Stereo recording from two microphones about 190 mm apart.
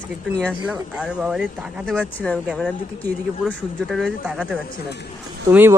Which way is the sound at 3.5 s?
Centre (ahead or behind).